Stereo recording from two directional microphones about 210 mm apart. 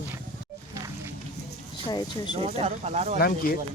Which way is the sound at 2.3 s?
30° right (ahead or behind).